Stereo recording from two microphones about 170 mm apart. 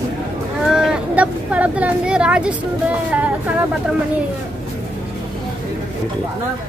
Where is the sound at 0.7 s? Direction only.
5° right (ahead or behind).